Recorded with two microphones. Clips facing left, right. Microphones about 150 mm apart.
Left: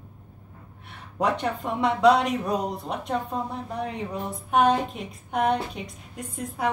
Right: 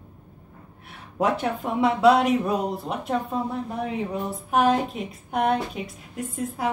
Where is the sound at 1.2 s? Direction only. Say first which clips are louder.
Right 2 dB; 5° right (ahead or behind).